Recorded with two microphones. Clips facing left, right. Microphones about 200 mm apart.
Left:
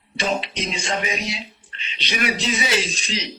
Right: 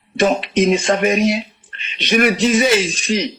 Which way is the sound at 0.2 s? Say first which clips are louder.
Right 10 dB; 50° right (ahead or behind).